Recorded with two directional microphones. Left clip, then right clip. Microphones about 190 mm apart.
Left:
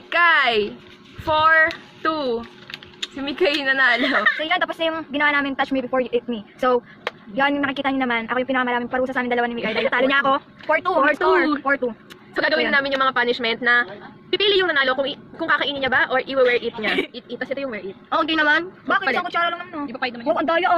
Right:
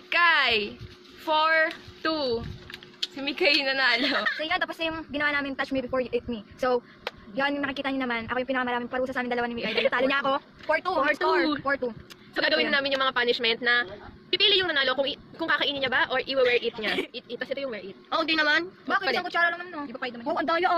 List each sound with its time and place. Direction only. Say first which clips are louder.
0.1 s a sound: left 5 dB; 20° right (ahead or behind)
1.2 s a woman's voice: left 7 dB; 25° right (ahead or behind)
4.2 s a woman's voice: left 7 dB; 5° left (ahead or behind)
12.4 s a woman's voice: left 5 dB; 25° right (ahead or behind)
18.1 s a woman's voice: left 5 dB; 10° right (ahead or behind)
19.1 s a woman's voice: left 4 dB; centre (ahead or behind)
19.9 s a woman's voice: left 8 dB; 15° left (ahead or behind)
20.2 s a woman's voice: left 5 dB; centre (ahead or behind)